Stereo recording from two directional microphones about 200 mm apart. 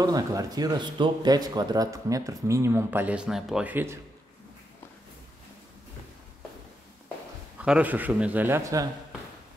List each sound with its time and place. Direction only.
0.0 s speech: 15° right (ahead or behind)
7.5 s speech: 5° right (ahead or behind)